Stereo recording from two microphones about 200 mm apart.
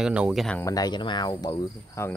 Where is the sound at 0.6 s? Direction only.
15° left (ahead or behind).